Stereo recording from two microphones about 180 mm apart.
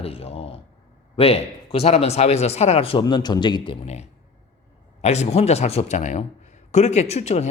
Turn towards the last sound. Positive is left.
turn(degrees=35)  # may be behind; listen again after turning